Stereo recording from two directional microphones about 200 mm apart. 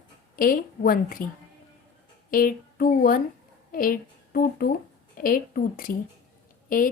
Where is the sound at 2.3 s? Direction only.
45° left (ahead or behind).